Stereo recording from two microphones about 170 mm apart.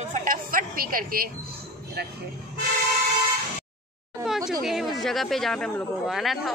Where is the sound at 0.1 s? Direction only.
55° right (ahead or behind).